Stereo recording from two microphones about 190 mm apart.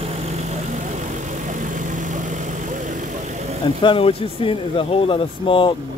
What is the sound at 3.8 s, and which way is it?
Speech, 30° left (ahead or behind).